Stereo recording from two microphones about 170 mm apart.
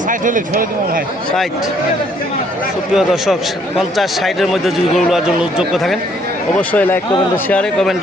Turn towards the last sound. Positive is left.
turn(degrees=5)  # may be behind; listen again after turning